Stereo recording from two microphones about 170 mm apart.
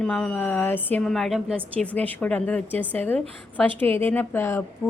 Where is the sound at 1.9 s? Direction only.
10° left (ahead or behind).